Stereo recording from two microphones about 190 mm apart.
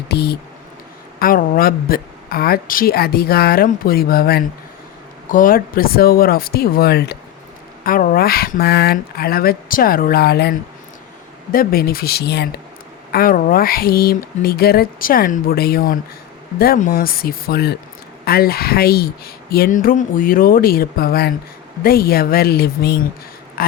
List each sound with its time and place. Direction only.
0.1 s speech: 60° left (ahead or behind)
1.2 s speech: 50° left (ahead or behind)
23.6 s a sound: 50° left (ahead or behind)